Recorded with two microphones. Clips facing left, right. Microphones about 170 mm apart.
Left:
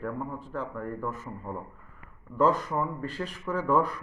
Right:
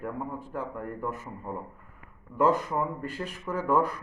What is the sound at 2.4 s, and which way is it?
Speech, 10° right (ahead or behind).